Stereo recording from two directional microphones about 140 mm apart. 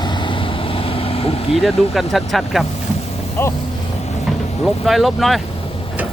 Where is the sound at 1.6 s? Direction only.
Centre (ahead or behind).